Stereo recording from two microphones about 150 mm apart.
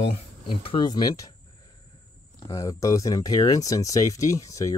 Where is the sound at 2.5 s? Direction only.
20° left (ahead or behind).